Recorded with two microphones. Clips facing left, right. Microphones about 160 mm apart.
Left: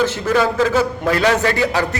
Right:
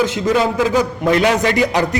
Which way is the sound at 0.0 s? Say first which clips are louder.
Right 1 dB; 15° right (ahead or behind).